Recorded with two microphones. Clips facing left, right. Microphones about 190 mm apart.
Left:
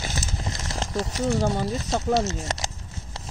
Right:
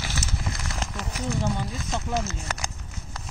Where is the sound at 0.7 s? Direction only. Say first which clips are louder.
Left 5 dB; 35° left (ahead or behind).